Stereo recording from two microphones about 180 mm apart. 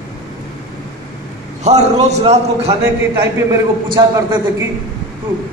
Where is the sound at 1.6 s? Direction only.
40° right (ahead or behind).